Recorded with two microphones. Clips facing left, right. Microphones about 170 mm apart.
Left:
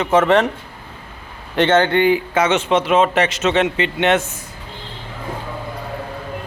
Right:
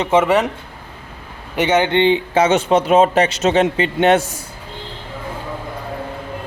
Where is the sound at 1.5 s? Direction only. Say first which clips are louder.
Left 1 dB; 10° right (ahead or behind); by 4.2 s 35° right (ahead or behind).